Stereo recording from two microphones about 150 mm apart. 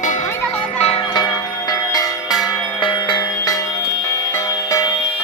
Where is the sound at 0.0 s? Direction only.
55° left (ahead or behind).